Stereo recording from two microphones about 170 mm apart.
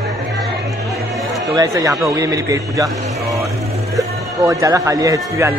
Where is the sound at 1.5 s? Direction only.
20° right (ahead or behind).